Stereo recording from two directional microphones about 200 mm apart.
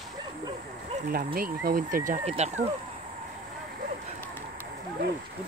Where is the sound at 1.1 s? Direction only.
45° right (ahead or behind).